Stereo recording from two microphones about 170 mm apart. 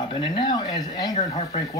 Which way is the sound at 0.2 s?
25° left (ahead or behind).